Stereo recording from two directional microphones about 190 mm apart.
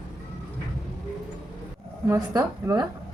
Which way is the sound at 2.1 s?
20° right (ahead or behind).